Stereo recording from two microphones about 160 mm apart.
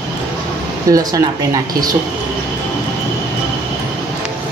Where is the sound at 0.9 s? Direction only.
20° right (ahead or behind).